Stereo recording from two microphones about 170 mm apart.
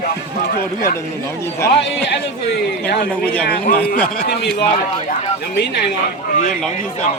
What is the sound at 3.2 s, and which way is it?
Speech, 5° left (ahead or behind).